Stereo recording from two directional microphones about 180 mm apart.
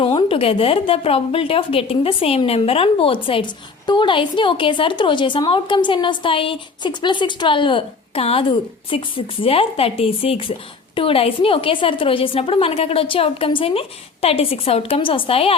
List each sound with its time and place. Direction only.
0.0 s a woman's voice: 30° left (ahead or behind)